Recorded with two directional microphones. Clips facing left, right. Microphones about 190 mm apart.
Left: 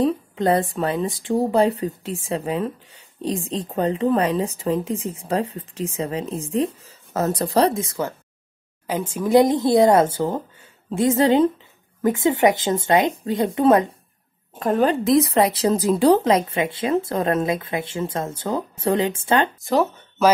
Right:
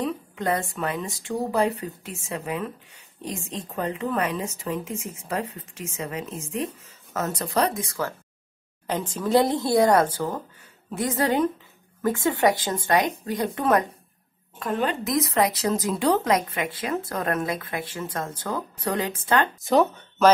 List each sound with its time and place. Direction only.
0.0 s speech: 30° left (ahead or behind)
8.8 s a woman's voice: 10° left (ahead or behind); by 13.8 s 25° left (ahead or behind)
14.6 s a woman's voice: 40° left (ahead or behind)
19.6 s speech: centre (ahead or behind)